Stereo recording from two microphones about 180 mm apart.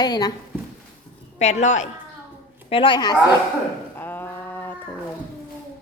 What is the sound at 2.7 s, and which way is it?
Speech, 30° left (ahead or behind).